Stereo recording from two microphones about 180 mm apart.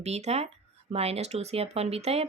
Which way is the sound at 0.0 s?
35° right (ahead or behind).